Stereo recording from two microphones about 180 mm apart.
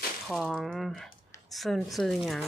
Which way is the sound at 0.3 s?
Centre (ahead or behind).